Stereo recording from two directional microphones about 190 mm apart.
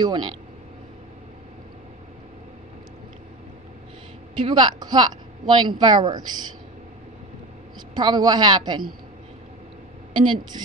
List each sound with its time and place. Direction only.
0.0 s speech: 25° right (ahead or behind)
4.4 s speech: 25° right (ahead or behind)
7.9 s speech: 20° right (ahead or behind)
10.1 s speech: 25° right (ahead or behind)